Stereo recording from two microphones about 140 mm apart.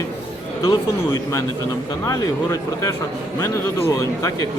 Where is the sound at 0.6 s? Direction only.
25° left (ahead or behind).